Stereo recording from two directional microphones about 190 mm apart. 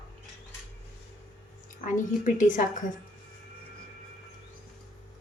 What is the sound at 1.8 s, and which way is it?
Speech, 40° left (ahead or behind).